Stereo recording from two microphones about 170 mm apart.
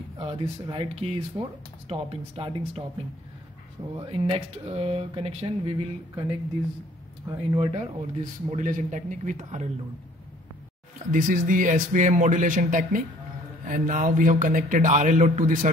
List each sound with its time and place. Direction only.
0.2 s speech: 30° right (ahead or behind)
3.9 s speech: 30° right (ahead or behind)
7.2 s speech: 30° right (ahead or behind)
8.5 s a man's voice: 50° right (ahead or behind)
11.1 s a man's voice: 50° right (ahead or behind)